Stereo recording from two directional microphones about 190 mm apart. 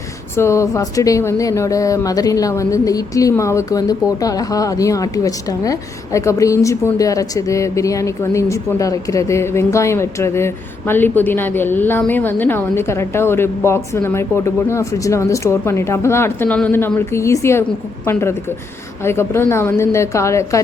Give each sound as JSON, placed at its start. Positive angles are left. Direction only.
{"t": 0.3, "sound": "speech", "side_deg": 15}